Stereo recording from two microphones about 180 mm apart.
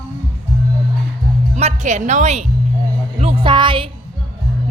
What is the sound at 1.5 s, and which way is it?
Speech, 40° right (ahead or behind).